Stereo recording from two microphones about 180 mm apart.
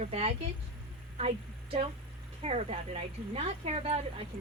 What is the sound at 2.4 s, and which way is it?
Speech, 35° right (ahead or behind).